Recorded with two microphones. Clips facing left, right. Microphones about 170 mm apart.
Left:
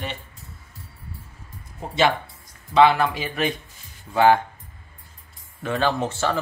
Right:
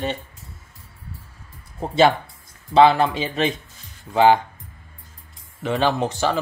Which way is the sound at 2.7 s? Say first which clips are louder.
Right 2 dB; 30° right (ahead or behind).